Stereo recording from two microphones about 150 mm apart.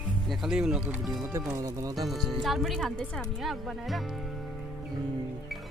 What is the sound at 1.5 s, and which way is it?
Speech, 20° right (ahead or behind).